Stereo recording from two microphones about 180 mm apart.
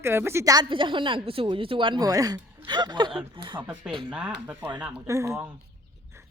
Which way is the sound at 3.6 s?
5° right (ahead or behind).